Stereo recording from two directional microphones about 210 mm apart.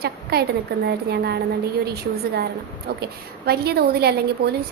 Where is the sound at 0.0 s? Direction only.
50° right (ahead or behind).